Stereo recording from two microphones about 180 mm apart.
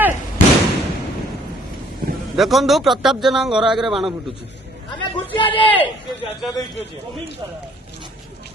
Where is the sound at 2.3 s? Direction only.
Centre (ahead or behind).